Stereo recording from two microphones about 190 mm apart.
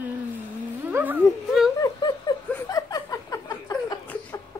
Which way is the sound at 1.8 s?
20° left (ahead or behind).